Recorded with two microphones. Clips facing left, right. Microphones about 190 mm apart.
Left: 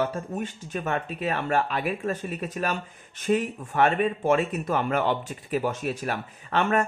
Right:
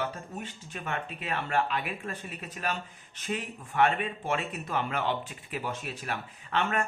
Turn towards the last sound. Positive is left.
turn(degrees=45)  # may be behind; listen again after turning